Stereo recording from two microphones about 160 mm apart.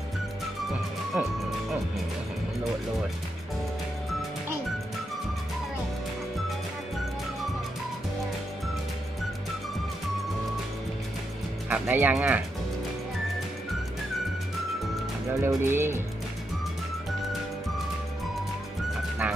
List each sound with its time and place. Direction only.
1.1 s speech: 10° right (ahead or behind)
11.7 s speech: 10° right (ahead or behind)
15.2 s speech: 15° right (ahead or behind)